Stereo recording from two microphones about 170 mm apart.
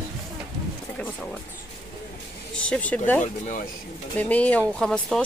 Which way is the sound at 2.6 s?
5° left (ahead or behind).